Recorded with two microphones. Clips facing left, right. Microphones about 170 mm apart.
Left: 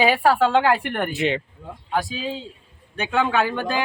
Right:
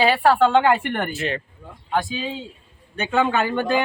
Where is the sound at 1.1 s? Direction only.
20° left (ahead or behind).